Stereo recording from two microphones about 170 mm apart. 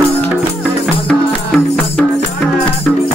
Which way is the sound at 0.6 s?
Centre (ahead or behind).